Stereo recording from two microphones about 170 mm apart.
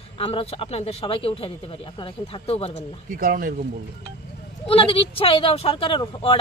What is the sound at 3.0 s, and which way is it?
Speech, 55° right (ahead or behind).